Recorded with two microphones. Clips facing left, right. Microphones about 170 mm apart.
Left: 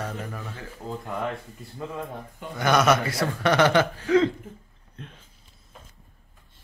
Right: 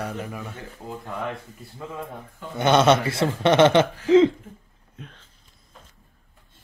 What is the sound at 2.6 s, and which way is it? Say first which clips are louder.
Speech: right 3 dB; 25° right (ahead or behind).